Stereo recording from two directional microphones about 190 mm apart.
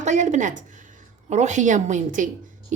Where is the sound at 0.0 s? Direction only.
40° right (ahead or behind).